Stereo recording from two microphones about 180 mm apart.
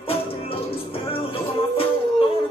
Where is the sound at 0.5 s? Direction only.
30° left (ahead or behind).